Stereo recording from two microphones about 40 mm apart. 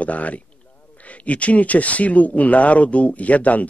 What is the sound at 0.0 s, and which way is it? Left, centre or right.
Speech, left.